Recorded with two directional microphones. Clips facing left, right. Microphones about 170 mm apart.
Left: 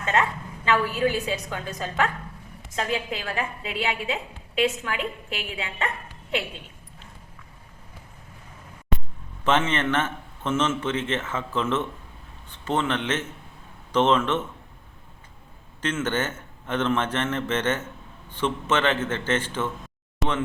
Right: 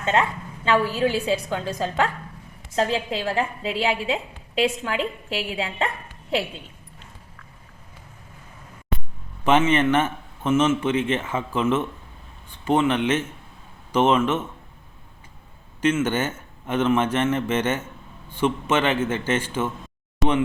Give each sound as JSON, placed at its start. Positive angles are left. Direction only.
{"t": 0.0, "sound": "a woman's voice", "side_deg": -25}
{"t": 9.4, "sound": "a man's voice", "side_deg": -10}
{"t": 15.8, "sound": "a man's voice", "side_deg": -10}
{"t": 20.2, "sound": "speech", "side_deg": 0}